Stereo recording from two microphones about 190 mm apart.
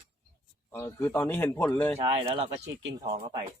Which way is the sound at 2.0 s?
30° right (ahead or behind).